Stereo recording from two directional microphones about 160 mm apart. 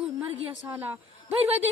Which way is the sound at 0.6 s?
10° right (ahead or behind).